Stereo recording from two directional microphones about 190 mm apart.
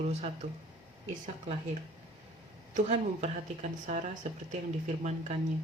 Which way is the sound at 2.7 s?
35° right (ahead or behind).